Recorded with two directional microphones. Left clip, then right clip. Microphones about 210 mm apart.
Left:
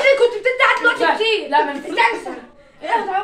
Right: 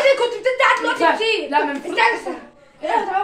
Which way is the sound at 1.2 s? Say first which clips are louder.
Left 2 dB; 10° left (ahead or behind).